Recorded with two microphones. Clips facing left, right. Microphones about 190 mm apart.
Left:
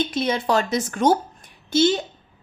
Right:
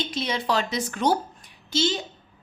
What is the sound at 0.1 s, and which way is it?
A woman's voice, 50° left (ahead or behind).